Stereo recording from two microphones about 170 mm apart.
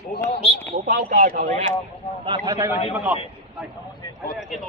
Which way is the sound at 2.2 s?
25° right (ahead or behind).